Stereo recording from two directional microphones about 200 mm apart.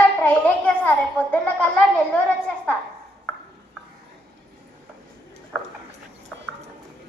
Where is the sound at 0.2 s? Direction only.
5° left (ahead or behind).